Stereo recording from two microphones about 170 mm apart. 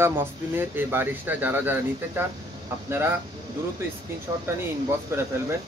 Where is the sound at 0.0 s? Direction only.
15° right (ahead or behind).